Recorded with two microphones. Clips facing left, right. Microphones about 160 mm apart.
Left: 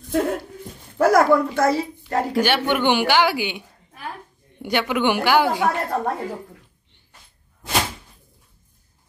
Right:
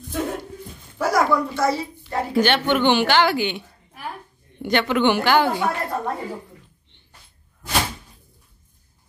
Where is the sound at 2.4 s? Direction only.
10° left (ahead or behind).